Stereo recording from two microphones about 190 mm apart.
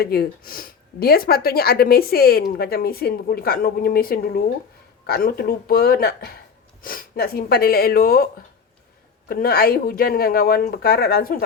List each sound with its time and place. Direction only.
0.0 s speech: 55° left (ahead or behind)
9.3 s speech: 50° left (ahead or behind)